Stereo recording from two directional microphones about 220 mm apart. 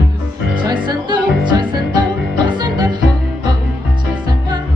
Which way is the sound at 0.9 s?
20° right (ahead or behind).